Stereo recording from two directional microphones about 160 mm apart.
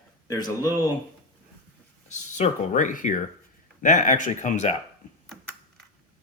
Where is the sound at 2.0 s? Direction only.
45° left (ahead or behind).